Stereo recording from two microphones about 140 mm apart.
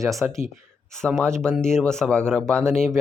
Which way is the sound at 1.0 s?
5° left (ahead or behind).